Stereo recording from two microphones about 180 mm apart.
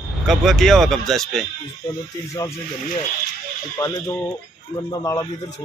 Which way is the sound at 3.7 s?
20° left (ahead or behind).